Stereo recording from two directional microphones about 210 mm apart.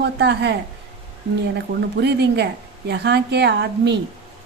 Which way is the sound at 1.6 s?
55° right (ahead or behind).